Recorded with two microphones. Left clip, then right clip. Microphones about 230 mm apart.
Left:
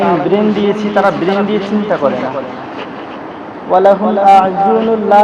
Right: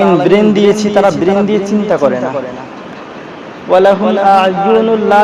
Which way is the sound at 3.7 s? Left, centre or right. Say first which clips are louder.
Right 1 dB; right.